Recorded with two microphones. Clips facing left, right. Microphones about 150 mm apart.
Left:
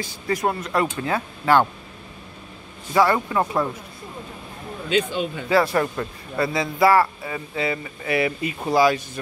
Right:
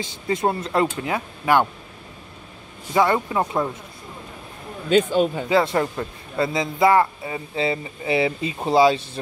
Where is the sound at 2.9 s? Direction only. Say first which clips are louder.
Even; 20° right (ahead or behind).